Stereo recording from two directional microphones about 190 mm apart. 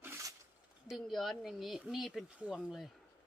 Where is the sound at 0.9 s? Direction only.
Centre (ahead or behind).